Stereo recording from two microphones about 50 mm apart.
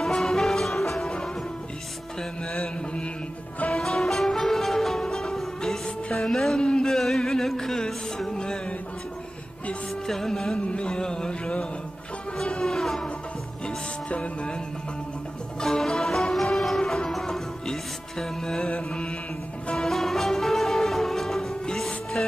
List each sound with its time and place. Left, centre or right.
0.0 s music: centre
2.5 s mantra: centre
3.7 s music: centre
6.1 s a sound: centre
10.0 s music: centre
10.6 s music: left
14.0 s music: left
15.6 s music: centre